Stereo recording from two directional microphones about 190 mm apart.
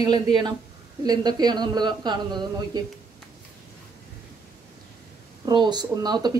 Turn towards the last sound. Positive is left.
turn(degrees=-20)  # may be behind; listen again after turning